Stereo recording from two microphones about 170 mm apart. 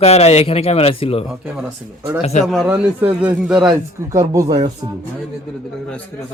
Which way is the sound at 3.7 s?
25° right (ahead or behind).